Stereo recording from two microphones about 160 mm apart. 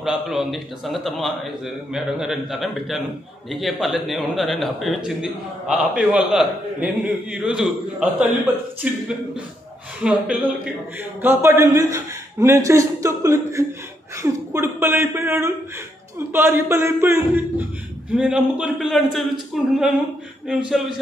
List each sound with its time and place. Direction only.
0.0 s a man's voice: centre (ahead or behind)
10.0 s a man's voice: 5° right (ahead or behind)
11.2 s a man's voice: 15° right (ahead or behind)